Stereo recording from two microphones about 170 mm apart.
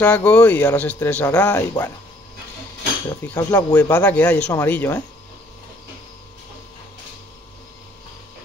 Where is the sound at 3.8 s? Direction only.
10° left (ahead or behind).